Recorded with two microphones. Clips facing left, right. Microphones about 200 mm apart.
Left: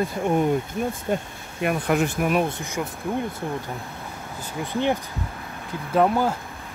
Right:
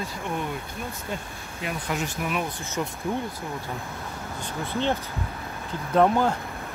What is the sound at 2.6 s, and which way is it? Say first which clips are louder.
Speech: left 1 dB; 10° left (ahead or behind).